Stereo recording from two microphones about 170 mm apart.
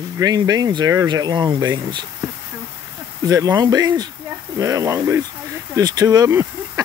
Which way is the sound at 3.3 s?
20° right (ahead or behind).